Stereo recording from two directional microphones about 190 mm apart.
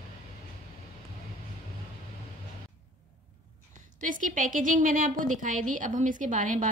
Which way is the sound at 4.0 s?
40° right (ahead or behind).